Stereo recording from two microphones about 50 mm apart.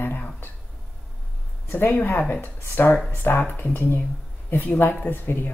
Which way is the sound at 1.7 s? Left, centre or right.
Left.